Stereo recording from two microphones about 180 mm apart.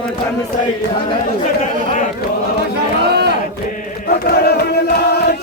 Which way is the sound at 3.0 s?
65° right (ahead or behind).